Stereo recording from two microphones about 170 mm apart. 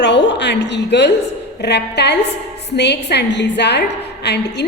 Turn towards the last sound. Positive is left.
turn(degrees=80)